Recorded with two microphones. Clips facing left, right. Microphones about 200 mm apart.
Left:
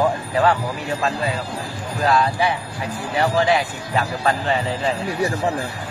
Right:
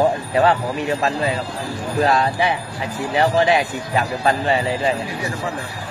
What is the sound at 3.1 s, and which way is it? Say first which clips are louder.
A man's voice: right 2 dB; 20° right (ahead or behind).